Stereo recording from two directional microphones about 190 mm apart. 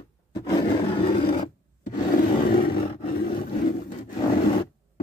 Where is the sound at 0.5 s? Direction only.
25° left (ahead or behind).